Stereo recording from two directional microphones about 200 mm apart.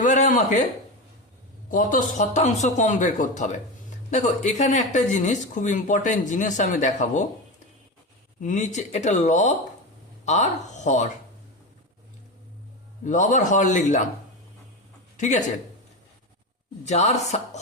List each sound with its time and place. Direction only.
0.0 s speech: 40° left (ahead or behind)
1.7 s speech: 40° left (ahead or behind)
8.4 s speech: 40° left (ahead or behind)
13.1 s speech: 35° left (ahead or behind)
15.2 s speech: 35° left (ahead or behind)
16.8 s speech: 35° left (ahead or behind)